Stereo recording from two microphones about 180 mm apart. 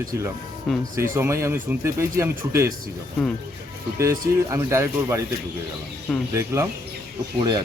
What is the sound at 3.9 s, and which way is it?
Speech, 15° right (ahead or behind).